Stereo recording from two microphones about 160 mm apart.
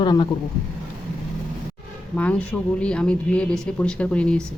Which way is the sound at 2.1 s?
10° left (ahead or behind).